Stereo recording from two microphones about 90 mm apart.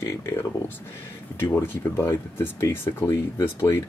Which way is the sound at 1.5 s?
25° left (ahead or behind).